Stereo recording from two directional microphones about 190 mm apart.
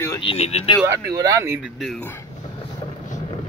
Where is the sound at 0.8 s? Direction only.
20° right (ahead or behind).